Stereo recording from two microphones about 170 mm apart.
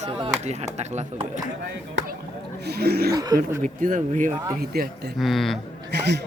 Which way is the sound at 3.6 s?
50° right (ahead or behind).